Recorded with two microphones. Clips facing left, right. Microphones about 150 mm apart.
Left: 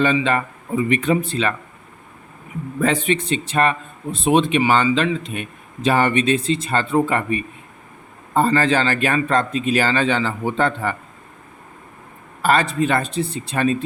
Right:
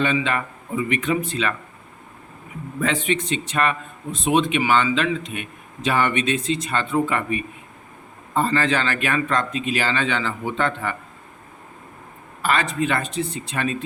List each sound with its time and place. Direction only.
0.0 s a man's voice: 35° left (ahead or behind)
2.8 s a man's voice: 35° left (ahead or behind)
12.4 s a man's voice: 35° left (ahead or behind)